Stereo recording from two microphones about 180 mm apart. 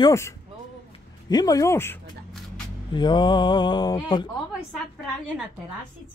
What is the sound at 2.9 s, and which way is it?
Speech, 25° left (ahead or behind).